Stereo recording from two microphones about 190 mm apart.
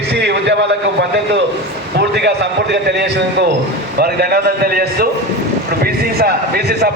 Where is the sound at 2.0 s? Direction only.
60° right (ahead or behind).